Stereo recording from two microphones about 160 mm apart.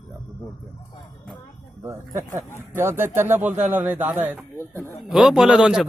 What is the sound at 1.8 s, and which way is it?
A man's voice, 20° right (ahead or behind).